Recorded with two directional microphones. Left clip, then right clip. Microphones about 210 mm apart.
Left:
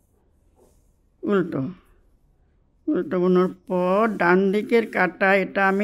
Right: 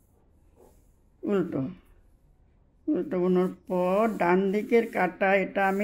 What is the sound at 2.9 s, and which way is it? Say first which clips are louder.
Speech: left 5 dB; 45° left (ahead or behind).